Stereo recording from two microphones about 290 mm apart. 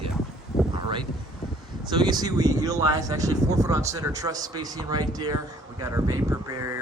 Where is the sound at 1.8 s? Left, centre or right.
Centre.